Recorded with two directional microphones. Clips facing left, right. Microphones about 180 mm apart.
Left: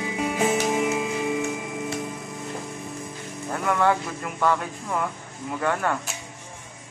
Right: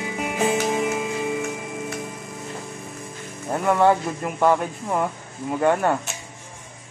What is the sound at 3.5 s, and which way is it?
Speech, 25° right (ahead or behind).